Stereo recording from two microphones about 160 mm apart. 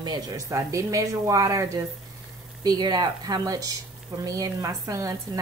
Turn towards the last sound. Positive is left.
turn(degrees=-20)  # may be behind; listen again after turning